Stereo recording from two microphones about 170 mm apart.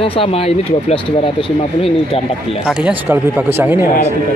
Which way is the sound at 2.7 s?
5° right (ahead or behind).